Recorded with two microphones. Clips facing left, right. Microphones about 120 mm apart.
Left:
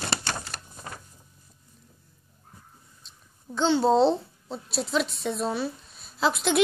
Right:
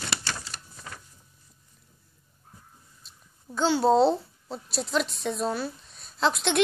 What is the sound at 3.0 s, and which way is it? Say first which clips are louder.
A child's voice: left 1 dB; 5° right (ahead or behind).